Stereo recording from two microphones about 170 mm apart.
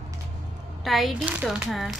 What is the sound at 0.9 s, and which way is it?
Speech, centre (ahead or behind).